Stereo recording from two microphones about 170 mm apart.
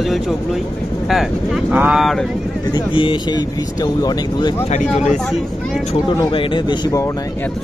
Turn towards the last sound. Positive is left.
turn(degrees=25)  # may be behind; listen again after turning